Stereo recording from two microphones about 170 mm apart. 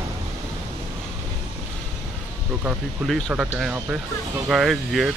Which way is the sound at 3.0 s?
5° left (ahead or behind).